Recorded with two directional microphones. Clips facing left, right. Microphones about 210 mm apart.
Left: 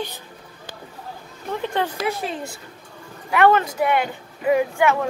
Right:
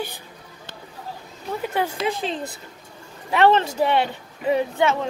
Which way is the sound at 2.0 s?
20° right (ahead or behind).